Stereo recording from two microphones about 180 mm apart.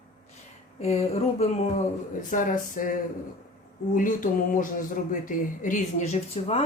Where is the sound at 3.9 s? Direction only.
50° left (ahead or behind).